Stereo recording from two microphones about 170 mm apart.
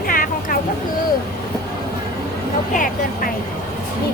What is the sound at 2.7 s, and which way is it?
Speech, 50° left (ahead or behind).